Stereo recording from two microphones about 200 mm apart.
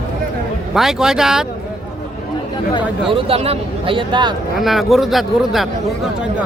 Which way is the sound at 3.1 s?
30° right (ahead or behind).